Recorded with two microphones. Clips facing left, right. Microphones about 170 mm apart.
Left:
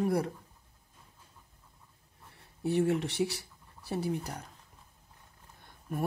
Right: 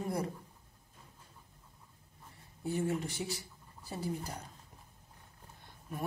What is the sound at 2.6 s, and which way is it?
Speech, 70° left (ahead or behind).